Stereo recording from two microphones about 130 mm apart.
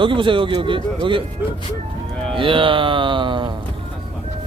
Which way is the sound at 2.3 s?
40° right (ahead or behind).